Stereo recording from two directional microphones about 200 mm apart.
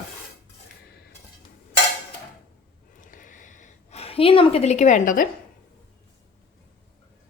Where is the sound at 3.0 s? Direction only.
40° left (ahead or behind).